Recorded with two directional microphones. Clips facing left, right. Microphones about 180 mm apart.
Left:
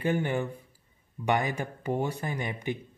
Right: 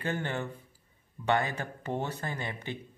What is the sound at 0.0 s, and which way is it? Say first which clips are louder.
Speech: left 5 dB; 10° left (ahead or behind).